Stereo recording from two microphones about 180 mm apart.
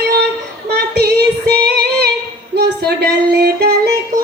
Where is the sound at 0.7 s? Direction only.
65° right (ahead or behind).